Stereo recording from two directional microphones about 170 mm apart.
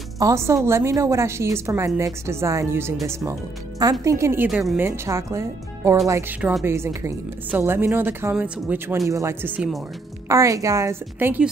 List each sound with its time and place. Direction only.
0.2 s a woman's voice: 15° right (ahead or behind)
4.0 s a woman's voice: 15° right (ahead or behind)
4.5 s speech: centre (ahead or behind)
4.7 s a woman's voice: 15° right (ahead or behind)